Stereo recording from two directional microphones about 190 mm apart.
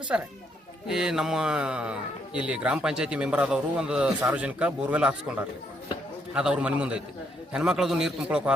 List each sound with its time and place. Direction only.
0.1 s a man's voice: 5° right (ahead or behind)
6.3 s a man's voice: 5° right (ahead or behind)